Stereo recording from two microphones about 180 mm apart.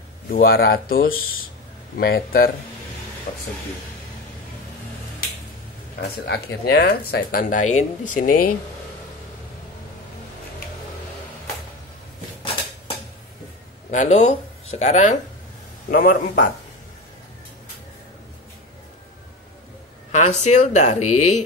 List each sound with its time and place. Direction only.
0.3 s speech: 60° left (ahead or behind)
6.2 s speech: 65° left (ahead or behind)
13.8 s speech: 40° left (ahead or behind)
15.9 s speech: 50° left (ahead or behind)
20.1 s speech: 40° left (ahead or behind)